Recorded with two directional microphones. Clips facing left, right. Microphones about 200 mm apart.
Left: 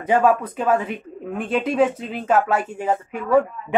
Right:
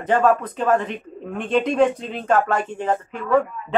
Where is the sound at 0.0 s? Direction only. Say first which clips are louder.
Even; 10° left (ahead or behind).